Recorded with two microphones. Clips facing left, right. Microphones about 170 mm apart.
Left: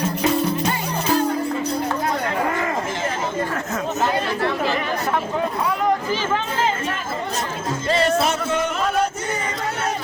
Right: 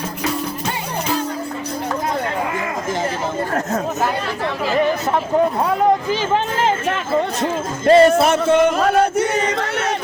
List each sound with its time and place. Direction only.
7.9 s music: 55° right (ahead or behind)